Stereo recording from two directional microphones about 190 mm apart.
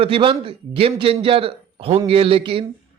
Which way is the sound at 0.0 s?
30° right (ahead or behind).